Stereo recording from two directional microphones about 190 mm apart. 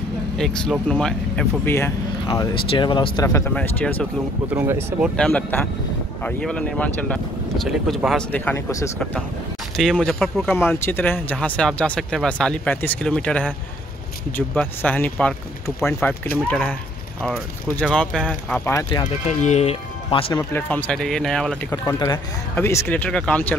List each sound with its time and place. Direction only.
0.4 s speech: centre (ahead or behind); by 3.3 s 25° left (ahead or behind)
3.3 s speech: 10° left (ahead or behind)
4.5 s speech: 10° right (ahead or behind)
5.1 s speech: 5° left (ahead or behind)
9.8 s speech: 5° left (ahead or behind)
18.7 s speech: 20° left (ahead or behind)
19.2 s speech: 35° left (ahead or behind)
20.3 s speech: 10° left (ahead or behind)
21.6 s speech: 15° left (ahead or behind)